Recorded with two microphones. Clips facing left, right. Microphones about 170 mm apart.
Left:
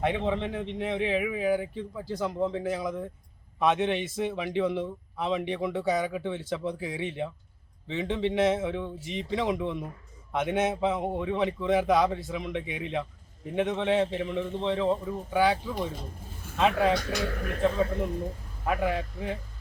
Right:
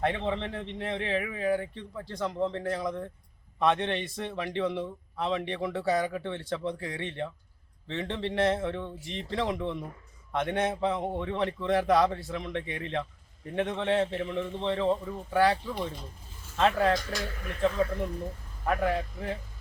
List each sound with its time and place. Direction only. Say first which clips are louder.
0.0 s a man's voice: left 2 dB; centre (ahead or behind)
18.6 s a man's voice: even; 5° left (ahead or behind)